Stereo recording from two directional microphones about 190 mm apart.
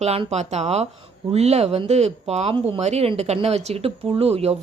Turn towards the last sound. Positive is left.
turn(degrees=-30)  # may be behind; listen again after turning